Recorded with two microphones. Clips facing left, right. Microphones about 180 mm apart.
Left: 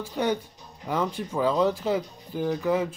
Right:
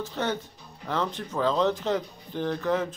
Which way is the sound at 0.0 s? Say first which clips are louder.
Left 3 dB; 15° left (ahead or behind).